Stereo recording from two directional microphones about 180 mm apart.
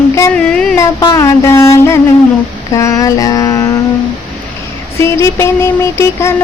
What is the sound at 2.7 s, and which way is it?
Mantra, 15° left (ahead or behind).